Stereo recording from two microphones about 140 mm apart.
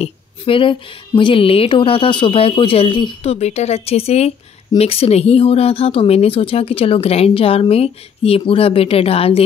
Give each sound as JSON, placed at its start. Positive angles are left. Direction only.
{"t": 0.0, "sound": "speech", "side_deg": 40}